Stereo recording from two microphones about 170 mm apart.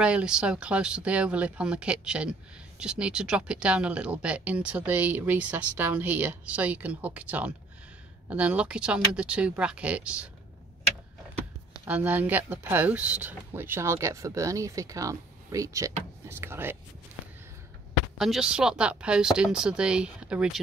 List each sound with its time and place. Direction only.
0.0 s speech: 5° right (ahead or behind)
11.8 s speech: 10° right (ahead or behind)
18.1 s speech: centre (ahead or behind)